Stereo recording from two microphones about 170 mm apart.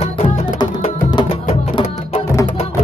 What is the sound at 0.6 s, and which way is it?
Music, 30° left (ahead or behind).